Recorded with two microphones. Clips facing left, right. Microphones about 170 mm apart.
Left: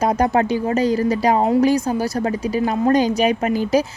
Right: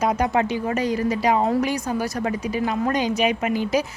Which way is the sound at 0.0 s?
35° left (ahead or behind).